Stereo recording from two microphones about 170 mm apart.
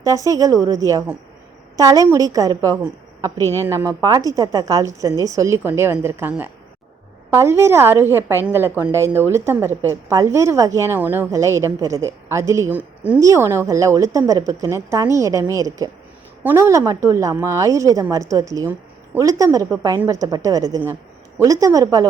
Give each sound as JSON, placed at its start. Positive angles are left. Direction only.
{"t": 0.0, "sound": "a woman's voice", "side_deg": -20}